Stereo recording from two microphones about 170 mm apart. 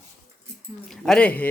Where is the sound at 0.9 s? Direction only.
5° left (ahead or behind).